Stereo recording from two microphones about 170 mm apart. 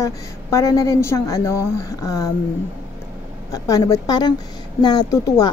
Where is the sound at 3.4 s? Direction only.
20° left (ahead or behind).